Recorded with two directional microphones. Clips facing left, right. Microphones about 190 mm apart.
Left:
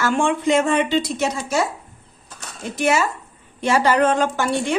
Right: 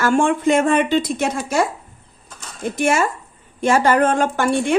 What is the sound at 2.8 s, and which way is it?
A woman's voice, 50° right (ahead or behind).